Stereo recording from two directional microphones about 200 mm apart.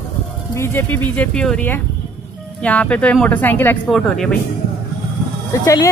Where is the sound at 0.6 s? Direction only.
10° left (ahead or behind).